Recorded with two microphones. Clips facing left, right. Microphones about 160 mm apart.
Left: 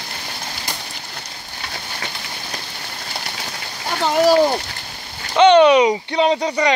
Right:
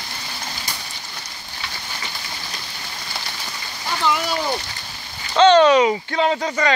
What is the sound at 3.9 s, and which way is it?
Speech, 45° left (ahead or behind).